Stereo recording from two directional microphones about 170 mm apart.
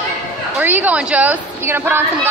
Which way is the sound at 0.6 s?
10° right (ahead or behind).